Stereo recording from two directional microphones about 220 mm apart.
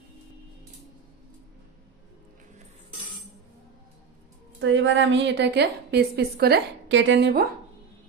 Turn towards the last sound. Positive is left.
turn(degrees=-50)  # may be behind; listen again after turning